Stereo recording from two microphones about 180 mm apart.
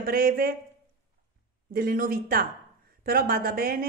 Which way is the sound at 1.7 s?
55° right (ahead or behind).